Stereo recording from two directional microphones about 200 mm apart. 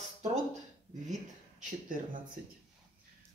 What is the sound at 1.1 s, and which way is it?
Speech, 40° right (ahead or behind).